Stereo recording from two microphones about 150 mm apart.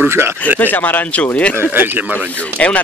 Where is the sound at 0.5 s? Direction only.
10° left (ahead or behind).